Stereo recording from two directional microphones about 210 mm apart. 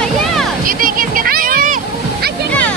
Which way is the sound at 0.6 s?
40° right (ahead or behind).